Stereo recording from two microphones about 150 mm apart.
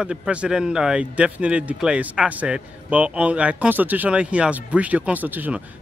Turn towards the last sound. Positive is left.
turn(degrees=-10)  # may be behind; listen again after turning